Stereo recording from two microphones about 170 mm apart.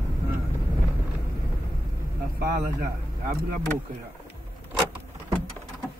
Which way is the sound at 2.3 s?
65° right (ahead or behind).